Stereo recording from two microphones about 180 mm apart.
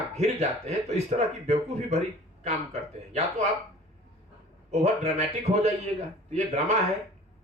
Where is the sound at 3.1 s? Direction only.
40° right (ahead or behind).